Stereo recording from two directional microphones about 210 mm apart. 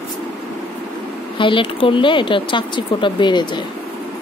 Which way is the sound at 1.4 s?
25° left (ahead or behind).